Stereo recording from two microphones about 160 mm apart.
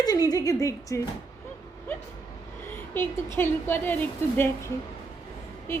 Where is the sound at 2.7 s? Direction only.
15° left (ahead or behind).